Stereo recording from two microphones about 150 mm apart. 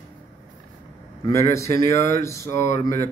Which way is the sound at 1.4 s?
20° left (ahead or behind).